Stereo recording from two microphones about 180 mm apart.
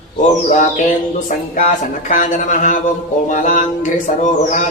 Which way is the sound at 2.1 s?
45° left (ahead or behind).